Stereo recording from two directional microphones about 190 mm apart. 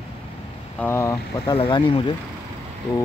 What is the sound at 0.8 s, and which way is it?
Speech, 15° left (ahead or behind).